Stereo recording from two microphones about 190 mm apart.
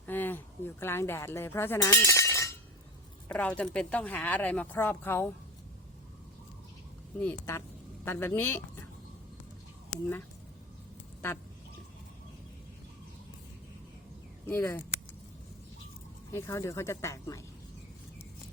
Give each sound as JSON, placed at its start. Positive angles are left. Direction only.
{"t": 0.0, "sound": "speech", "side_deg": 10}
{"t": 7.2, "sound": "speech", "side_deg": 10}
{"t": 14.4, "sound": "speech", "side_deg": 15}
{"t": 16.3, "sound": "speech", "side_deg": 15}